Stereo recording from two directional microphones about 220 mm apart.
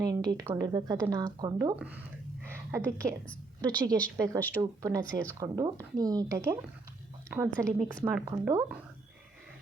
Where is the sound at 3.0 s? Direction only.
35° right (ahead or behind).